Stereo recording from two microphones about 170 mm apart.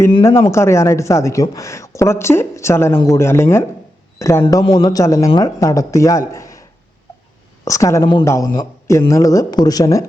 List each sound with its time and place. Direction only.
0.2 s speech: 15° left (ahead or behind)
4.6 s speech: 30° left (ahead or behind)